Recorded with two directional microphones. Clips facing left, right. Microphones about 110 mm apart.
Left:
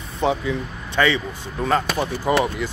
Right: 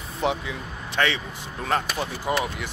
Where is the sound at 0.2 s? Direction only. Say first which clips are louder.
Left 5 dB; 5° right (ahead or behind).